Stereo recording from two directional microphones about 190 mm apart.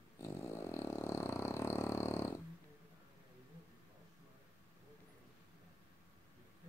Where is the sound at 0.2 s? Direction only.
15° left (ahead or behind).